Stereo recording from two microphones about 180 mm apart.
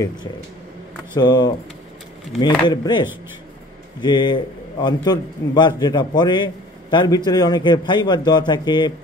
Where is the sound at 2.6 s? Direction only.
25° left (ahead or behind).